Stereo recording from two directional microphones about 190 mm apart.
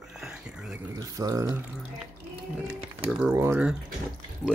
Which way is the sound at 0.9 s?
20° right (ahead or behind).